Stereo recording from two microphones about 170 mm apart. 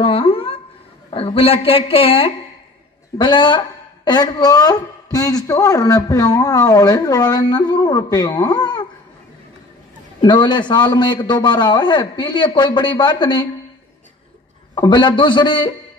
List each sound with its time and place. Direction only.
0.0 s dog: 30° left (ahead or behind)
1.1 s speech: 35° left (ahead or behind)
10.2 s speech: 25° left (ahead or behind)
14.8 s speech: 25° left (ahead or behind)